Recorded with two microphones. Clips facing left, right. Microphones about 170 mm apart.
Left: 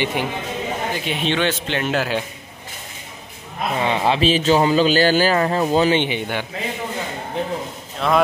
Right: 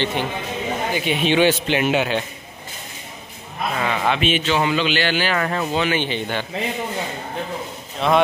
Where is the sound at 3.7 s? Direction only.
30° left (ahead or behind).